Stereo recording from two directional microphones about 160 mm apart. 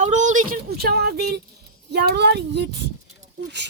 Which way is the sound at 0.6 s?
80° right.